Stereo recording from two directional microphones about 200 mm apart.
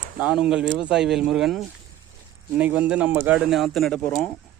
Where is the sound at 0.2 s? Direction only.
5° right (ahead or behind).